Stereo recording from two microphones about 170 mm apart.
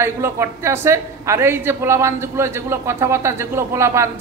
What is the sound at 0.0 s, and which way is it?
A woman's voice, 15° right (ahead or behind).